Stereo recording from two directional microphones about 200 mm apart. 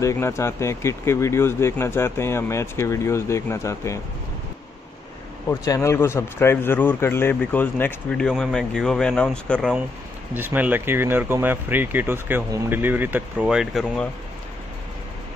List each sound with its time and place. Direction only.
0.0 s a man's voice: 15° left (ahead or behind)
5.5 s a man's voice: 15° left (ahead or behind)
10.3 s speech: 10° right (ahead or behind)